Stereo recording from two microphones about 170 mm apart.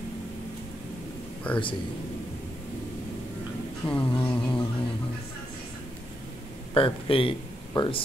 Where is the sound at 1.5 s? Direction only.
5° left (ahead or behind).